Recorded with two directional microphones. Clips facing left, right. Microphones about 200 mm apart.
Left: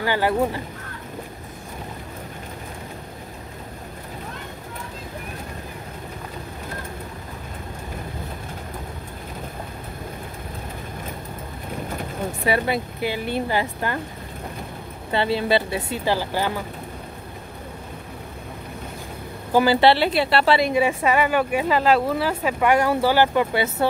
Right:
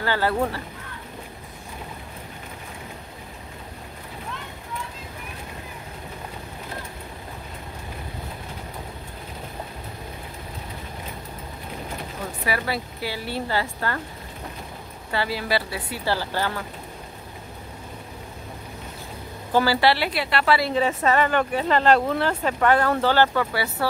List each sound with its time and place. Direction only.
0.0 s speech: 15° left (ahead or behind)
12.4 s speech: 25° left (ahead or behind)
15.0 s speech: 25° left (ahead or behind)
19.5 s speech: 20° left (ahead or behind)
20.7 s speech: 10° left (ahead or behind)